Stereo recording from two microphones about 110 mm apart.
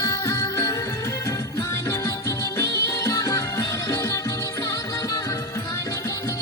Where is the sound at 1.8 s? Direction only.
30° left (ahead or behind).